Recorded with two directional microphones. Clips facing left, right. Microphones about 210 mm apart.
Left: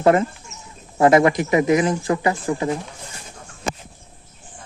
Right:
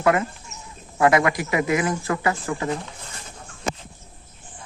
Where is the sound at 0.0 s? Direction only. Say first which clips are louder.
Left 4 dB; 30° left (ahead or behind).